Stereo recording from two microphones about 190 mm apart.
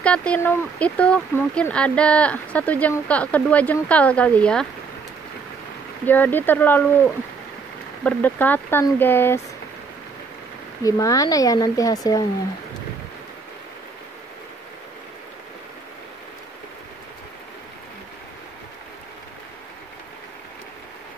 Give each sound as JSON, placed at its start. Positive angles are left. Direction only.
{"t": 0.0, "sound": "speech", "side_deg": 5}
{"t": 6.0, "sound": "speech", "side_deg": 10}
{"t": 8.0, "sound": "speech", "side_deg": 10}
{"t": 10.8, "sound": "speech", "side_deg": 20}